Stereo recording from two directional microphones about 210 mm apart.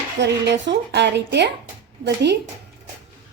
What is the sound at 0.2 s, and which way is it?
Speech, 55° right (ahead or behind).